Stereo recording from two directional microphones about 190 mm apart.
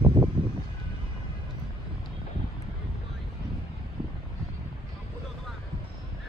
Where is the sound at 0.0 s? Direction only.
30° right (ahead or behind).